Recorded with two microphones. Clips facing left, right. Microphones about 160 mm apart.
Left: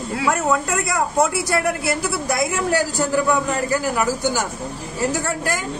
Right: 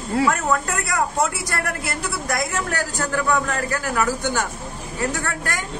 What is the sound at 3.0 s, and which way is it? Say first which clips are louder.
A man's voice: left 3 dB; 10° left (ahead or behind).